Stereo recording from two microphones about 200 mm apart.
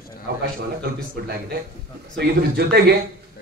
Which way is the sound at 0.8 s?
50° right (ahead or behind).